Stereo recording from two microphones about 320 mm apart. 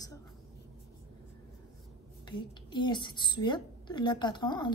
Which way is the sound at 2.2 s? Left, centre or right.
Centre.